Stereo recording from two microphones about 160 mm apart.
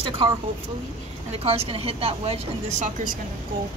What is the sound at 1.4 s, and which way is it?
Speech, 40° right (ahead or behind).